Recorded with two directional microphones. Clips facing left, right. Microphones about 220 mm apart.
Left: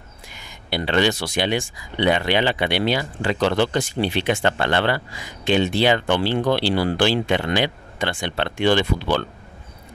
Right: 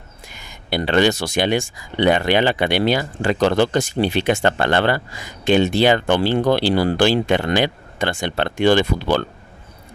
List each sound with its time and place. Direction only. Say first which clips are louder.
0.3 s speech: right 3 dB; 45° right (ahead or behind)